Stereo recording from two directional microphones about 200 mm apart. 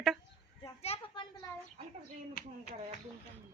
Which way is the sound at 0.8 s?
30° left (ahead or behind).